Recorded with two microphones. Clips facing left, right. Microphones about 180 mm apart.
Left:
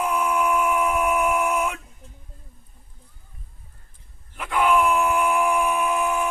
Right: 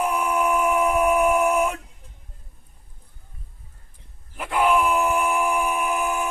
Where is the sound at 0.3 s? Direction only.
35° right (ahead or behind).